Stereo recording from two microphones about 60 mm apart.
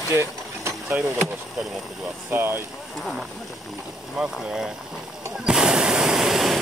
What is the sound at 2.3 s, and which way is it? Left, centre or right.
Speech, right.